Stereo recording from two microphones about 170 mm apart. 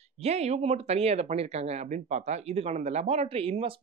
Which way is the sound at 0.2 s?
40° right (ahead or behind).